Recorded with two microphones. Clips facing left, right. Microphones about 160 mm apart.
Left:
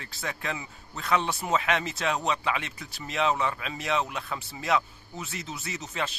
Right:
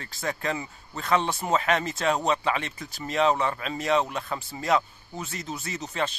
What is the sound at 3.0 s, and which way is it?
Speech, 40° right (ahead or behind).